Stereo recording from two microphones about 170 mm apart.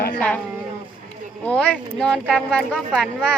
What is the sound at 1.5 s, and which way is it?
Speech, 5° left (ahead or behind).